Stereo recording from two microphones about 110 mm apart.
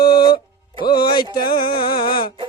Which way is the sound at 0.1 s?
45° left (ahead or behind).